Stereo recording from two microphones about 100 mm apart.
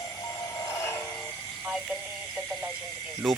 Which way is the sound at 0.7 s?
25° left (ahead or behind).